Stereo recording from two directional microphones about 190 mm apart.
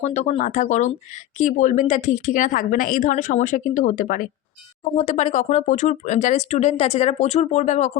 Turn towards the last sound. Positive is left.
turn(degrees=35)  # may be behind; listen again after turning